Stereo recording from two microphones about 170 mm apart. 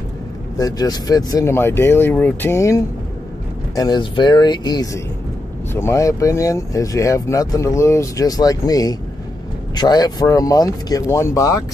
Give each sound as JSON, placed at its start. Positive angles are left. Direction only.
{"t": 0.6, "sound": "speech", "side_deg": 20}